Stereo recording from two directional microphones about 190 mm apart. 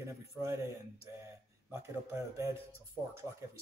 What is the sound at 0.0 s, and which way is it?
Speech, 15° right (ahead or behind).